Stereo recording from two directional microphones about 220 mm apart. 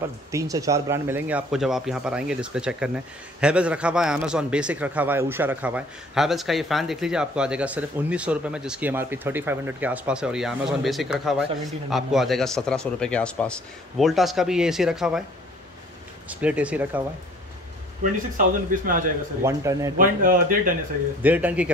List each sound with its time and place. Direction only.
0.3 s a man's voice: 15° right (ahead or behind)
16.3 s speech: 5° right (ahead or behind)
18.7 s speech: 35° right (ahead or behind)
19.4 s speech: 15° right (ahead or behind)
20.0 s speech: 40° right (ahead or behind)
21.2 s speech: 5° right (ahead or behind)